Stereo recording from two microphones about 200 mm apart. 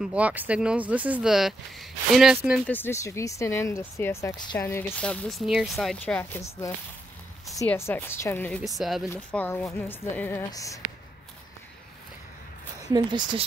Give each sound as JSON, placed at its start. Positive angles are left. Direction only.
{"t": 0.0, "sound": "speech", "side_deg": -5}
{"t": 2.6, "sound": "speech", "side_deg": 10}
{"t": 8.6, "sound": "speech", "side_deg": 0}
{"t": 12.9, "sound": "speech", "side_deg": -25}